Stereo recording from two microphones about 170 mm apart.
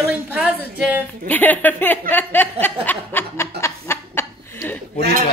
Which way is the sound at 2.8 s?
10° left (ahead or behind).